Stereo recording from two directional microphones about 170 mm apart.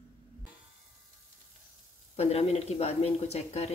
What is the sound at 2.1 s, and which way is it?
Speech, 40° left (ahead or behind).